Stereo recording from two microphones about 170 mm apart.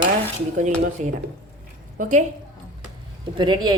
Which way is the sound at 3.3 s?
25° right (ahead or behind).